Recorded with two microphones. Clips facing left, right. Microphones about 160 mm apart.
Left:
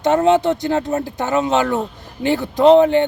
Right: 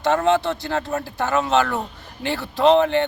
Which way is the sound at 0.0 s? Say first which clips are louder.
Left 4 dB; 20° left (ahead or behind).